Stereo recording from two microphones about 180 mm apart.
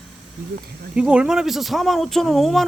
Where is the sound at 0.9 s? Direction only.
5° right (ahead or behind).